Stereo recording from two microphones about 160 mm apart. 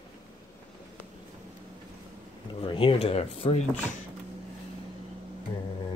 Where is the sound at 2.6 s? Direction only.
35° left (ahead or behind).